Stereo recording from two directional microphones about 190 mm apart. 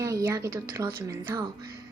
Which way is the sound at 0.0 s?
15° right (ahead or behind).